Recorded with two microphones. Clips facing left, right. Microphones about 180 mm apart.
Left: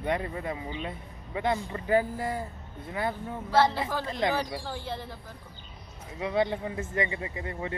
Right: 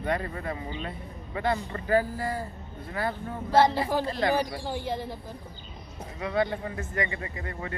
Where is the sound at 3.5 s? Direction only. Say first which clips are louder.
Right 2 dB; 15° right (ahead or behind).